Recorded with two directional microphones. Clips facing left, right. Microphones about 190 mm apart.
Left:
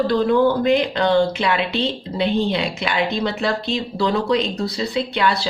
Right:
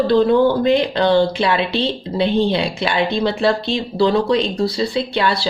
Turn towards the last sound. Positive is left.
turn(degrees=-30)  # may be behind; listen again after turning